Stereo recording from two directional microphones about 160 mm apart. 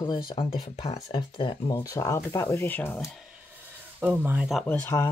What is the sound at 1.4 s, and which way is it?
Speech, 30° left (ahead or behind).